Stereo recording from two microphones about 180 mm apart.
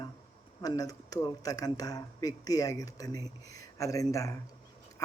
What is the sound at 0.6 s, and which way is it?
Speech, 20° left (ahead or behind).